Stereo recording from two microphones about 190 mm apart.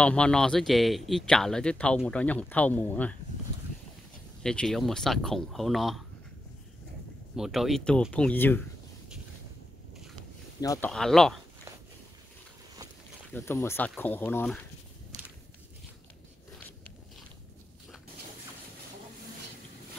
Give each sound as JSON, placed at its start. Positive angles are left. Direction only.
{"t": 0.0, "sound": "a man's voice", "side_deg": 5}
{"t": 4.4, "sound": "a man's voice", "side_deg": 5}
{"t": 7.3, "sound": "a man's voice", "side_deg": 0}
{"t": 10.6, "sound": "speech", "side_deg": 20}
{"t": 10.9, "sound": "a man's voice", "side_deg": 0}
{"t": 13.3, "sound": "speech", "side_deg": 10}